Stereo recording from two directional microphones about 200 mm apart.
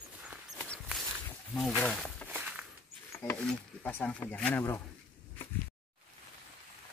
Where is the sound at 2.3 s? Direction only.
5° right (ahead or behind).